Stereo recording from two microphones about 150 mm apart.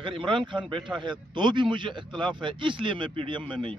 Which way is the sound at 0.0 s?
35° right (ahead or behind).